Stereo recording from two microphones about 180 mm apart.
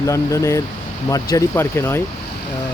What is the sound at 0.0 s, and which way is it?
Speech, 15° left (ahead or behind).